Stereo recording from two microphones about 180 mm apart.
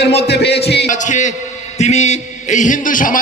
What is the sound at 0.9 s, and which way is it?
A man's voice, 45° left (ahead or behind).